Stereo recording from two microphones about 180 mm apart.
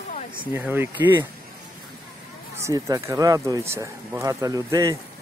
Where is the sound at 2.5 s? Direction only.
20° right (ahead or behind).